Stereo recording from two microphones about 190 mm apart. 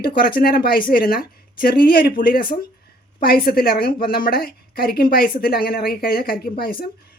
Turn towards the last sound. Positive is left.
turn(degrees=50)  # may be behind; listen again after turning